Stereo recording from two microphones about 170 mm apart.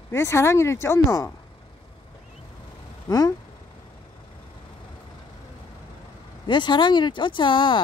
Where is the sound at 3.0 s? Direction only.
20° left (ahead or behind).